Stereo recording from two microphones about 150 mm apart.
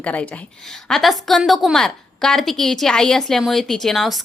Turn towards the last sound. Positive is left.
turn(degrees=0)  # may be behind; listen again after turning